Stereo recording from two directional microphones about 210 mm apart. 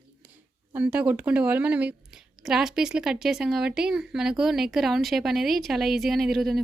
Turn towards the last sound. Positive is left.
turn(degrees=0)  # may be behind; listen again after turning